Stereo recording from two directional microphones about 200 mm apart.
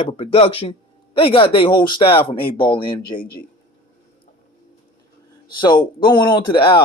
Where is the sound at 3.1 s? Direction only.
50° left (ahead or behind).